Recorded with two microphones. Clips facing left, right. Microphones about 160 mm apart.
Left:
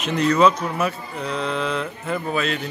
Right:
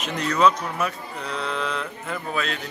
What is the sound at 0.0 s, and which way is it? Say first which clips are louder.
Speech: left 4 dB; centre (ahead or behind).